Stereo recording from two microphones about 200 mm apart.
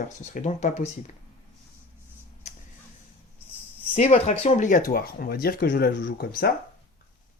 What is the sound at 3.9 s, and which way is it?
Speech, 30° left (ahead or behind).